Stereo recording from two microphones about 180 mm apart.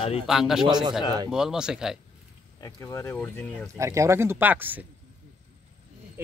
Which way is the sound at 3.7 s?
15° right (ahead or behind).